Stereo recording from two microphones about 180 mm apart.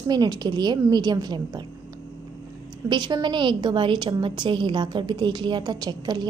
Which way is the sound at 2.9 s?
25° right (ahead or behind).